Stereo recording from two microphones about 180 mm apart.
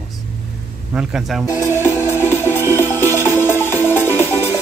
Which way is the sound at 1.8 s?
10° left (ahead or behind).